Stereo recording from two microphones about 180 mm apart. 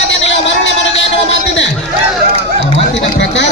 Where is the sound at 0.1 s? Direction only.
90° left.